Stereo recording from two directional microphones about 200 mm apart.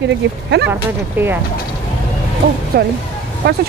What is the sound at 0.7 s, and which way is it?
Speech, 10° right (ahead or behind).